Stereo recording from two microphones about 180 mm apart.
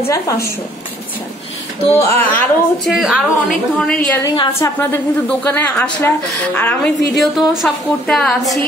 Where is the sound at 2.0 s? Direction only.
15° left (ahead or behind).